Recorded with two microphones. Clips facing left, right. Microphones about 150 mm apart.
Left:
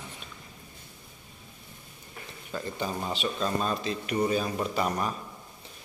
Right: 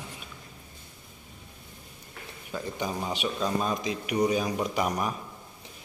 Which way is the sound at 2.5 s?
10° right (ahead or behind).